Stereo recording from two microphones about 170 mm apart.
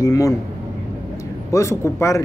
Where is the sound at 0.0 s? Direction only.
20° left (ahead or behind).